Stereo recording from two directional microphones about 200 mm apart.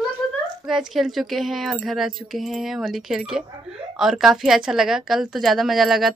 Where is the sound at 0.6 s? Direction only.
Centre (ahead or behind).